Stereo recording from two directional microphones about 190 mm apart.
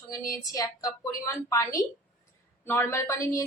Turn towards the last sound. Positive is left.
turn(degrees=15)  # may be behind; listen again after turning